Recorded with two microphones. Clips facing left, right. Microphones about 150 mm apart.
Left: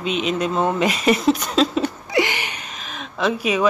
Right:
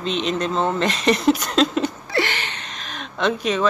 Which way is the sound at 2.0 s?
15° left (ahead or behind).